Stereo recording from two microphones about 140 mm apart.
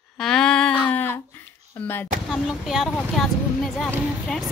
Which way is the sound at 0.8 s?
10° left (ahead or behind).